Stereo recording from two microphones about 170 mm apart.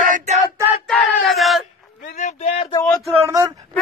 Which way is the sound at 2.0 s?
45° left (ahead or behind).